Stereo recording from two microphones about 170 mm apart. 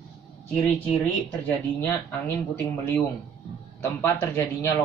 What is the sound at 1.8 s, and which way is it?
A man's voice, 10° left (ahead or behind).